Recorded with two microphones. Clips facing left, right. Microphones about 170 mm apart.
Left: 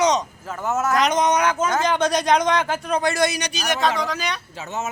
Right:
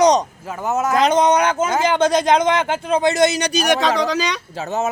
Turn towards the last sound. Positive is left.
turn(degrees=-35)  # may be behind; listen again after turning